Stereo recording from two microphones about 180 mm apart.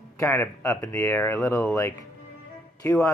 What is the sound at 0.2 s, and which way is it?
Speech, 15° left (ahead or behind).